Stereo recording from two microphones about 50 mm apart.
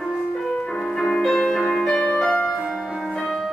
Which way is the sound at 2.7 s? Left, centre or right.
Centre.